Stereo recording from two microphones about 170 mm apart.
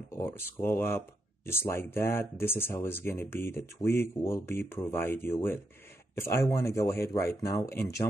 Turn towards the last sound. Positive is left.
turn(degrees=15)  # may be behind; listen again after turning